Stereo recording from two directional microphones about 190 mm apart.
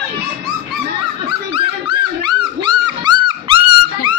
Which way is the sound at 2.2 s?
25° right (ahead or behind).